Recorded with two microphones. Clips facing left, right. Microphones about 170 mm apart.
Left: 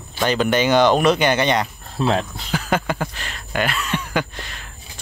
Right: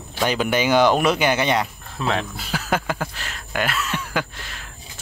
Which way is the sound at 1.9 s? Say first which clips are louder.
Left 4 dB; 30° left (ahead or behind).